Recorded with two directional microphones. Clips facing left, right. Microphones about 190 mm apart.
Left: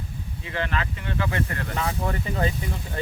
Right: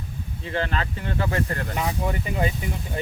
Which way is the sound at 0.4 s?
35° right (ahead or behind).